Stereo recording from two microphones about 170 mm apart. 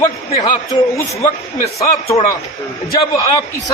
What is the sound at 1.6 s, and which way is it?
Speech, 35° left (ahead or behind).